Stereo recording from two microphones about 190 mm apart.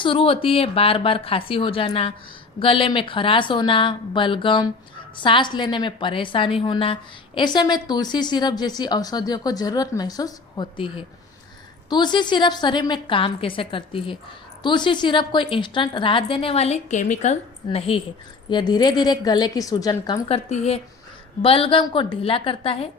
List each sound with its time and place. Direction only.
0.0 s a woman's voice: 30° left (ahead or behind)
20.2 s a woman's voice: 30° left (ahead or behind)